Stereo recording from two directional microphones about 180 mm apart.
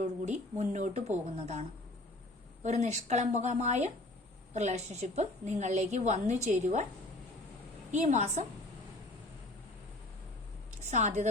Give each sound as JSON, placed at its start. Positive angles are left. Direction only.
{"t": 0.0, "sound": "a woman's voice", "side_deg": -40}
{"t": 2.6, "sound": "a woman's voice", "side_deg": -40}
{"t": 7.9, "sound": "a woman's voice", "side_deg": -40}
{"t": 10.7, "sound": "a sound", "side_deg": -40}